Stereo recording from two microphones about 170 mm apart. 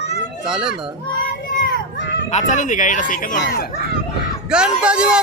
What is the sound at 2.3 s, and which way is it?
Speech, 45° left (ahead or behind).